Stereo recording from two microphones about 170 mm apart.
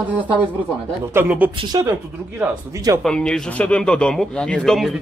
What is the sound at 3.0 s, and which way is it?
A man's voice, 5° left (ahead or behind).